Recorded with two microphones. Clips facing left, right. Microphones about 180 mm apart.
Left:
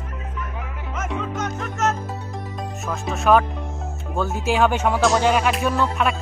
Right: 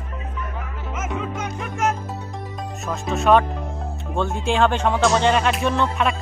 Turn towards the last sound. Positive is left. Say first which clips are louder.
# even
turn(degrees=5)  # may be behind; listen again after turning